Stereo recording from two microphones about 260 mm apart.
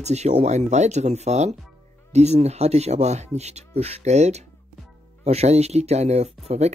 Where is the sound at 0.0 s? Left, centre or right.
Right.